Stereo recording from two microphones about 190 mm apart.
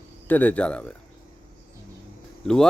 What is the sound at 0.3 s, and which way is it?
Speech, 10° left (ahead or behind).